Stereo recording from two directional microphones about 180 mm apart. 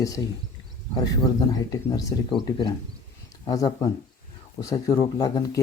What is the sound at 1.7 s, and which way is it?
Speech, 20° left (ahead or behind).